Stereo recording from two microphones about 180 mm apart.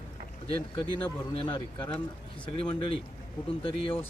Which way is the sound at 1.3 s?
30° left (ahead or behind).